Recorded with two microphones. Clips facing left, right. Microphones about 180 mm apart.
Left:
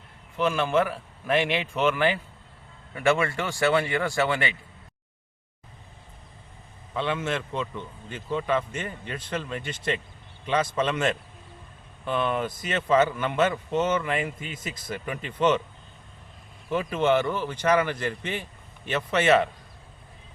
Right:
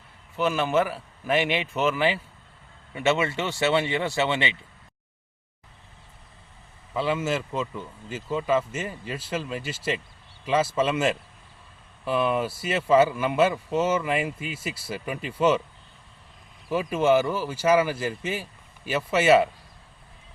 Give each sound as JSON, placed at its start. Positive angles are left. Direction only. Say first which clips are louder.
{"t": 0.3, "sound": "a man's voice", "louder": "even", "side_deg": -5}
{"t": 2.9, "sound": "speech", "louder": "even", "side_deg": -25}
{"t": 6.9, "sound": "a man's voice", "louder": "right 2 dB", "side_deg": -5}
{"t": 16.6, "sound": "a man's voice", "louder": "right 2 dB", "side_deg": -5}